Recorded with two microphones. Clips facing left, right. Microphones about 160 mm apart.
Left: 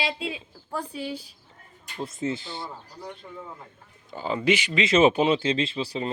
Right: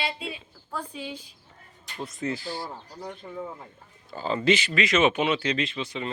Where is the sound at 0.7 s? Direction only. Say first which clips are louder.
Left 3 dB; 10° left (ahead or behind).